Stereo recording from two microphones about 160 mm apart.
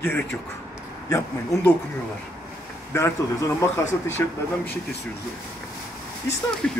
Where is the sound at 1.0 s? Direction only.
20° left (ahead or behind).